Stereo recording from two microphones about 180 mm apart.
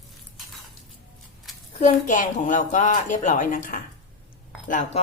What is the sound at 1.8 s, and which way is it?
A woman's voice, 45° left (ahead or behind).